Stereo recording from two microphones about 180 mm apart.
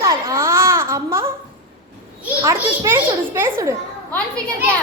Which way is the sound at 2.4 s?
15° right (ahead or behind).